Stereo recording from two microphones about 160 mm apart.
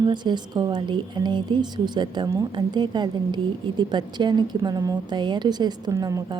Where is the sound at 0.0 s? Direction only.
25° right (ahead or behind).